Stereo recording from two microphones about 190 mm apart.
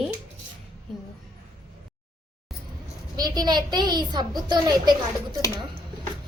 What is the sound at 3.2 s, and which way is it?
Speech, 20° right (ahead or behind).